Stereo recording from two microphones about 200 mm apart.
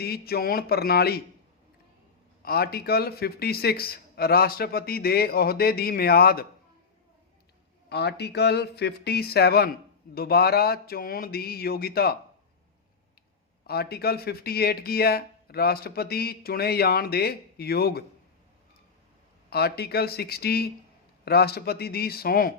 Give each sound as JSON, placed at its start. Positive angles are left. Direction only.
{"t": 0.0, "sound": "speech", "side_deg": 50}
{"t": 2.4, "sound": "speech", "side_deg": 50}
{"t": 7.9, "sound": "speech", "side_deg": 55}
{"t": 13.7, "sound": "speech", "side_deg": 50}
{"t": 19.5, "sound": "speech", "side_deg": 50}